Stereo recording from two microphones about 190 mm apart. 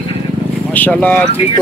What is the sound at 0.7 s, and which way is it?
Speech, 10° left (ahead or behind).